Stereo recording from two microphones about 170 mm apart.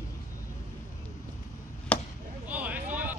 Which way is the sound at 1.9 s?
5° left (ahead or behind).